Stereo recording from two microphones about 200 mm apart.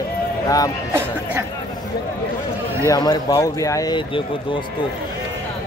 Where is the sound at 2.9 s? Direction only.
20° left (ahead or behind).